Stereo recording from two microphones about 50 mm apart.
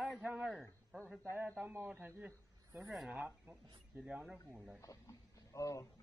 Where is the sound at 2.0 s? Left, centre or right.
Right.